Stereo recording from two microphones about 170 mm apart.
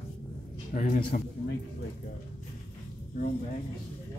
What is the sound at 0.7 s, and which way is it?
Speech, 50° left (ahead or behind).